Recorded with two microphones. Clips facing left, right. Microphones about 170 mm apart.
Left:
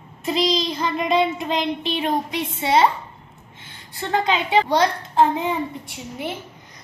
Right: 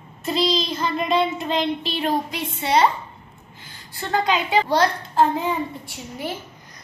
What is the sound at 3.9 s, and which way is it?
A child's voice, 20° left (ahead or behind).